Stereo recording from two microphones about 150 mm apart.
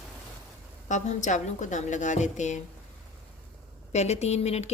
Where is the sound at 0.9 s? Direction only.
55° left (ahead or behind).